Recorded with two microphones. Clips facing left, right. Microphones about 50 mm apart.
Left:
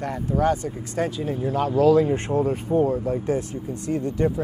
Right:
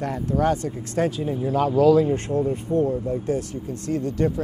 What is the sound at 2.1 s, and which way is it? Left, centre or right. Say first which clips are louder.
Speech: left 1 dB; left.